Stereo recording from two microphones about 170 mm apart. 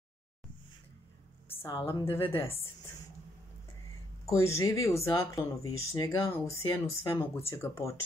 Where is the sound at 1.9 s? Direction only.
15° left (ahead or behind).